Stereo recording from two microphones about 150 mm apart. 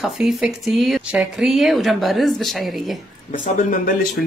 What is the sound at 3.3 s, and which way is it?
Speech, 60° left (ahead or behind).